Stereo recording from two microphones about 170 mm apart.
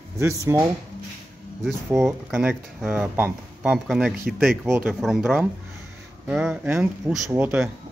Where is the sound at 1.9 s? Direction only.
15° right (ahead or behind).